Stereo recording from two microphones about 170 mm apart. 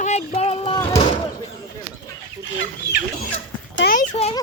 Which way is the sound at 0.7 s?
20° left (ahead or behind).